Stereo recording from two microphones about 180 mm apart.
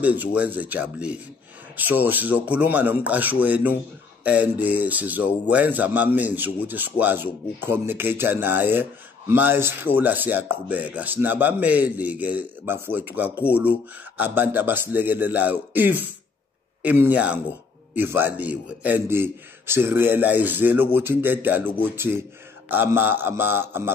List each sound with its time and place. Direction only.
0.0 s speech: 10° right (ahead or behind)